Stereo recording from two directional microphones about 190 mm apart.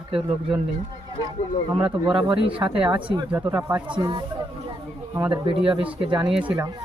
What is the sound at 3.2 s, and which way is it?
Speech, 15° right (ahead or behind).